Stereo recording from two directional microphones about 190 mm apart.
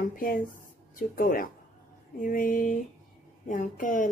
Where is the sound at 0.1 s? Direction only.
45° left (ahead or behind).